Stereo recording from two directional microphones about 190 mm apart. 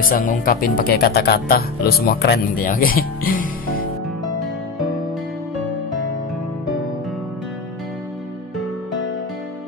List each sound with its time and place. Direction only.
0.0 s speech: 45° left (ahead or behind)